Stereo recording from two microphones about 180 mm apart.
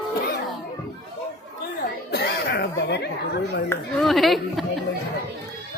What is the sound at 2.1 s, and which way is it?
Snicker, 65° left (ahead or behind).